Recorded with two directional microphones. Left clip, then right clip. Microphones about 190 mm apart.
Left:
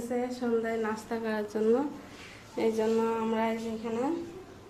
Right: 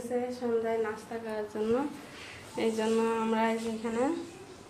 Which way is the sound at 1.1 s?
50° left (ahead or behind).